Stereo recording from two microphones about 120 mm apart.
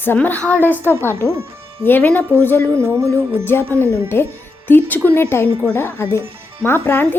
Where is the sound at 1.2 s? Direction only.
20° right (ahead or behind).